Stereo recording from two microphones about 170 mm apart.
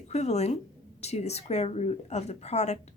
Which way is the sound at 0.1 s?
40° left (ahead or behind).